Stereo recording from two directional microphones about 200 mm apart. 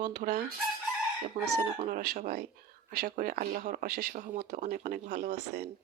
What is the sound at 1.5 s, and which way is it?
Speech, 55° right (ahead or behind).